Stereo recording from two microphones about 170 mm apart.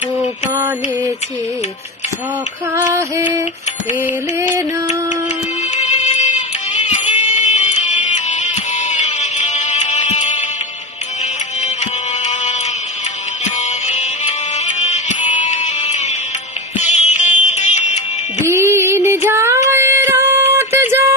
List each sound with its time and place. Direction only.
0.5 s mantra: 20° right (ahead or behind)
2.7 s female singing: 15° right (ahead or behind)
5.8 s music: 40° left (ahead or behind)
11.6 s a sound: 40° left (ahead or behind)
13.4 s music: 45° left (ahead or behind)
18.5 s music: 15° right (ahead or behind)
19.2 s child singing: 15° right (ahead or behind)